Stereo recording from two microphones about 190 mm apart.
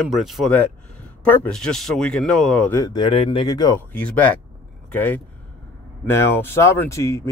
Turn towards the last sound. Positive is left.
turn(degrees=15)  # may be behind; listen again after turning